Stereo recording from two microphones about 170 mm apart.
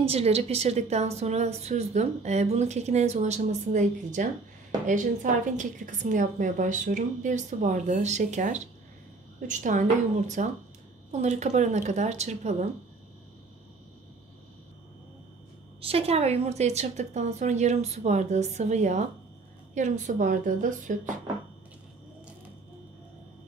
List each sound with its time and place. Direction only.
0.0 s a woman's voice: 35° right (ahead or behind)
15.8 s a woman's voice: 35° right (ahead or behind)